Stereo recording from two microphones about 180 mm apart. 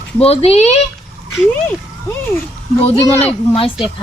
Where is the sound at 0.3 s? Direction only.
35° left (ahead or behind).